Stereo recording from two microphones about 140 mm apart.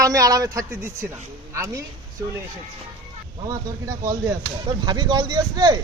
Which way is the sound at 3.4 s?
25° right (ahead or behind).